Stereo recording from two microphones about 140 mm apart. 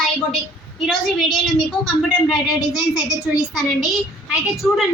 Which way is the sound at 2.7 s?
25° left (ahead or behind).